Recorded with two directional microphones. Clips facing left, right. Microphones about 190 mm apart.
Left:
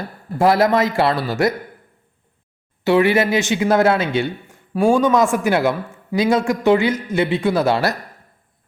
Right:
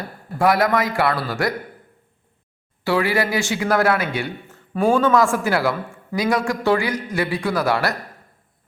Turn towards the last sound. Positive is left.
turn(degrees=25)  # may be behind; listen again after turning